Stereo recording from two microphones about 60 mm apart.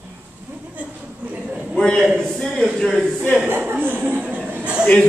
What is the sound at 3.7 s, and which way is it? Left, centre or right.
Speech, right.